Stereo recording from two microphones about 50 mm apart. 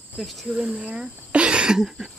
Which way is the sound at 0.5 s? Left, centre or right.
Right.